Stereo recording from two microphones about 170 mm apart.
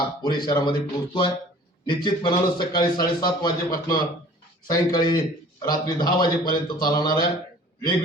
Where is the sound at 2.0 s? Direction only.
25° left (ahead or behind).